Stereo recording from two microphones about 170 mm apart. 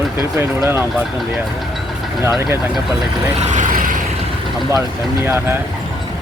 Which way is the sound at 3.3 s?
40° right (ahead or behind).